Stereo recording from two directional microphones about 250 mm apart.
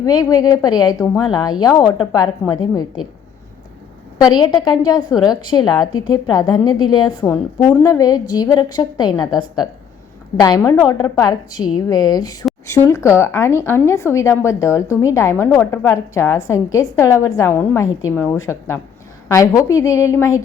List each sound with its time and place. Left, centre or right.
0.0 s speech: centre
4.2 s speech: centre